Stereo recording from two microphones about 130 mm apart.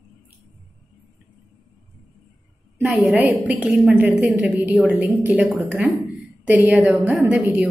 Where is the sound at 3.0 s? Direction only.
10° right (ahead or behind).